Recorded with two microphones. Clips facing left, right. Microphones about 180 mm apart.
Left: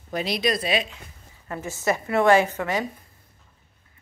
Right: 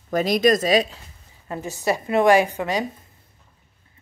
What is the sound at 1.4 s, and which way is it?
A woman's voice, 20° right (ahead or behind).